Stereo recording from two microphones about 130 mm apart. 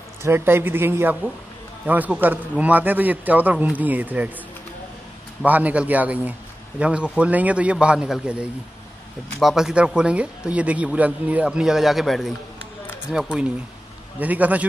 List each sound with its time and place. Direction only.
0.2 s speech: 20° right (ahead or behind)
5.4 s speech: 10° right (ahead or behind)